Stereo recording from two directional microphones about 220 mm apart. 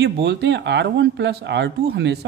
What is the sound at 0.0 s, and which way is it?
Speech, 50° right (ahead or behind).